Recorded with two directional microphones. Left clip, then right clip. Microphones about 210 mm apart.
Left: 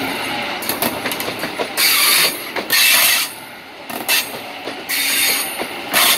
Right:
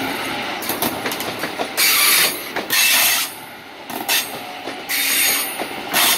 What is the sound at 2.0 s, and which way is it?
Mechanisms, 35° left (ahead or behind).